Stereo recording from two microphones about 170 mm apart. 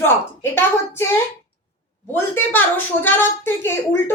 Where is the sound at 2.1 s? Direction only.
10° left (ahead or behind).